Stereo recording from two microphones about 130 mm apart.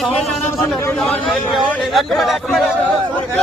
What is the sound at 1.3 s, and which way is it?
A man's voice, 5° right (ahead or behind).